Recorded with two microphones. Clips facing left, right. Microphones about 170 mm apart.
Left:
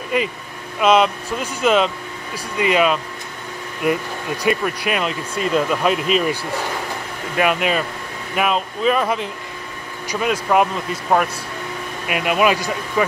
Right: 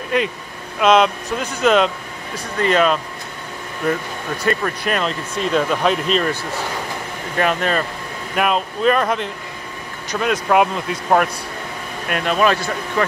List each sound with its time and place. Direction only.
0.1 s speech: 5° left (ahead or behind)